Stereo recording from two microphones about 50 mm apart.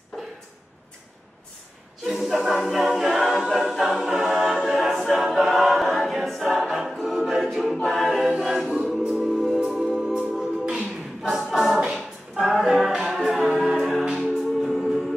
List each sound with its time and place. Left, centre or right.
2.0 s a capella: centre
3.6 s choir: centre
4.0 s a capella: centre
8.6 s music: centre
10.6 s music: centre
11.2 s a capella: centre
12.4 s music: centre